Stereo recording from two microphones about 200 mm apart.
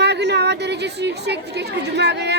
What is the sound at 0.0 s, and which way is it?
A woman's voice, 60° right (ahead or behind).